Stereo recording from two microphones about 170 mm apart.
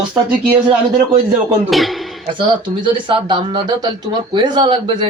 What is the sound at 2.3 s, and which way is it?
Speech, 30° right (ahead or behind).